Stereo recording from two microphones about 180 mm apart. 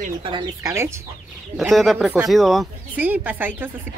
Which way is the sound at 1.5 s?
Centre (ahead or behind).